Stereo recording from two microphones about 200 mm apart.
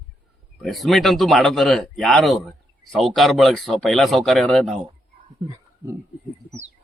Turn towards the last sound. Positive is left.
turn(degrees=-20)  # may be behind; listen again after turning